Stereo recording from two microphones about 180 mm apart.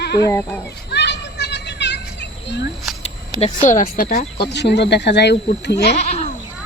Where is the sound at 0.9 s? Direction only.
70° left (ahead or behind).